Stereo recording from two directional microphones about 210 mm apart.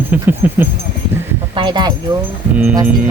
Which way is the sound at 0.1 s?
10° right (ahead or behind).